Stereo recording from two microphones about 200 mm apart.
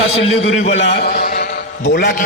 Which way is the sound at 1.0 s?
50° left (ahead or behind).